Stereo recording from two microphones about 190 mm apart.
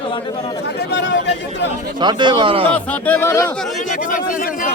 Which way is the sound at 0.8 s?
65° left (ahead or behind).